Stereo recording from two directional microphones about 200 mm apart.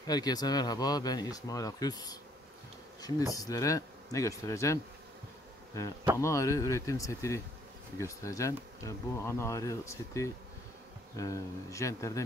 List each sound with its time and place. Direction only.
0.0 s speech: 20° left (ahead or behind)
3.3 s speech: 15° left (ahead or behind)
6.1 s speech: 15° left (ahead or behind)